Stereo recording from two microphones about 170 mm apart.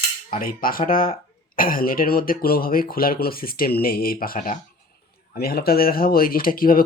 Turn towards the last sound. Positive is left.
turn(degrees=55)  # may be behind; listen again after turning